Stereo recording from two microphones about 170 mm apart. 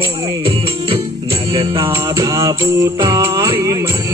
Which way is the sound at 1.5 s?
30° right (ahead or behind).